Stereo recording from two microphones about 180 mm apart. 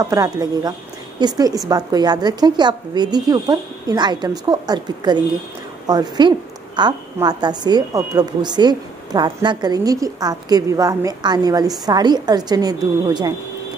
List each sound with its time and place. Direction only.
0.0 s a woman's voice: 20° right (ahead or behind)